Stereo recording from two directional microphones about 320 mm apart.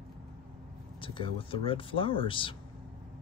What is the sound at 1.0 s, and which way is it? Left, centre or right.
Speech, centre.